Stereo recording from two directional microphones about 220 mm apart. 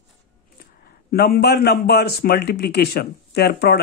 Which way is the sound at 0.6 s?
45° left (ahead or behind).